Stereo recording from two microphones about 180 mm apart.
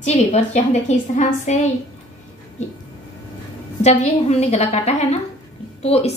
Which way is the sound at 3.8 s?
40° left (ahead or behind).